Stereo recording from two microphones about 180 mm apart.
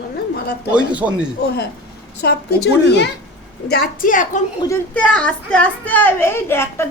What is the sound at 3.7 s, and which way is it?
Speech, 50° left (ahead or behind).